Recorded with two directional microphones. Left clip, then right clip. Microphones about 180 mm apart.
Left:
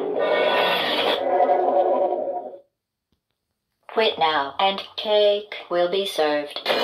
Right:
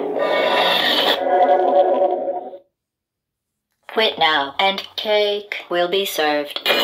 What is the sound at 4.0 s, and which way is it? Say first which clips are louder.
Speech: right 3 dB; 30° right (ahead or behind).